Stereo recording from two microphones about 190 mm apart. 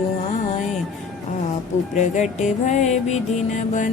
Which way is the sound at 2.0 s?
40° left (ahead or behind).